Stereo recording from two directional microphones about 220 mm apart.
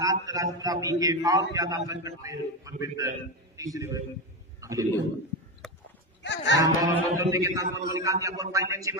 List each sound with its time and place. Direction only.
0.0 s a man's voice: 15° right (ahead or behind)
4.6 s a sound: 15° right (ahead or behind)
5.6 s horse: centre (ahead or behind)
6.2 s speech: 55° left (ahead or behind)
6.5 s a man's voice: 15° right (ahead or behind)